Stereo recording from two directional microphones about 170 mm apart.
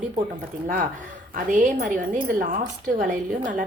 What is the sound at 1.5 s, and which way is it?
A woman's voice, 50° right (ahead or behind).